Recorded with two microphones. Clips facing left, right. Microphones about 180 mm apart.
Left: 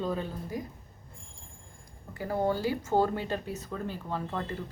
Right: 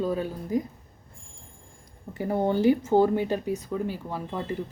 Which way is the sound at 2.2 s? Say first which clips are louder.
Right 5 dB; 20° right (ahead or behind).